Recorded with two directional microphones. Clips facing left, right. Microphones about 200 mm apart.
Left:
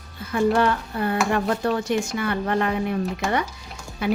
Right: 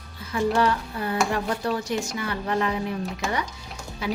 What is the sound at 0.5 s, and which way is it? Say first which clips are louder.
A woman's voice: left 2 dB; 55° left (ahead or behind).